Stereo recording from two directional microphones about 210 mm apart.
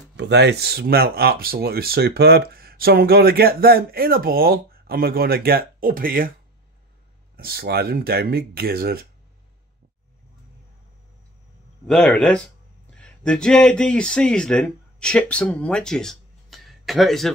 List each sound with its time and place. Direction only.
0.2 s speech: 55° right (ahead or behind)
7.3 s speech: 45° right (ahead or behind)
11.9 s speech: 5° left (ahead or behind)